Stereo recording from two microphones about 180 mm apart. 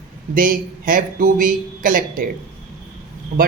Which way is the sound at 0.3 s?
50° right (ahead or behind).